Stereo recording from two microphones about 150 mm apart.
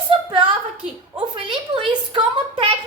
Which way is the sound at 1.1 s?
35° right (ahead or behind).